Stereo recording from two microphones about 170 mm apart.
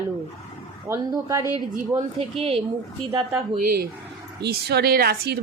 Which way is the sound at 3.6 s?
65° right (ahead or behind).